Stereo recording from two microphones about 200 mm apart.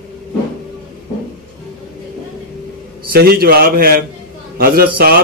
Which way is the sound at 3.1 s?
50° right (ahead or behind).